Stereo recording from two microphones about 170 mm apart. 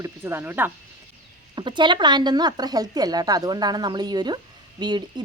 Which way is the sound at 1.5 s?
25° right (ahead or behind).